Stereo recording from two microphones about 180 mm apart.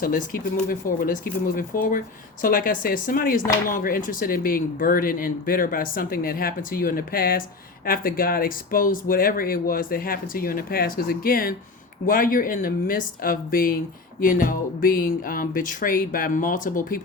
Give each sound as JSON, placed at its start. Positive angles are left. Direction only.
{"t": 0.0, "sound": "speech", "side_deg": 50}